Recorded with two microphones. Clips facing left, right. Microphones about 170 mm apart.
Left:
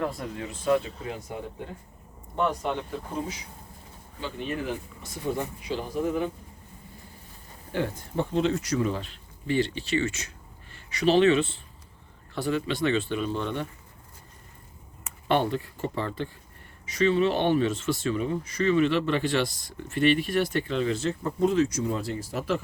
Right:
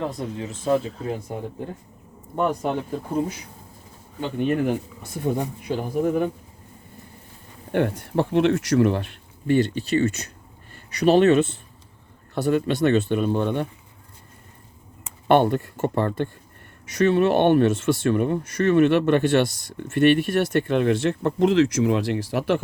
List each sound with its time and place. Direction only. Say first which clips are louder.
0.2 s speech: right 5 dB; 20° right (ahead or behind)
0.6 s speech: right 2 dB; 35° right (ahead or behind)
2.3 s speech: right 4 dB; 45° right (ahead or behind)
4.2 s speech: right 9 dB; 55° right (ahead or behind)
7.7 s speech: right 7 dB; 65° right (ahead or behind)
9.5 s speech: right 6 dB; 45° right (ahead or behind)
15.3 s speech: right 7 dB; 55° right (ahead or behind)